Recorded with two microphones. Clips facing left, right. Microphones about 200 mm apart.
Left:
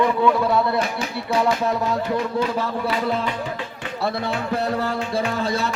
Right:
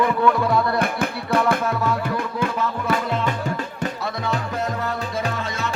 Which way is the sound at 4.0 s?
30° left (ahead or behind).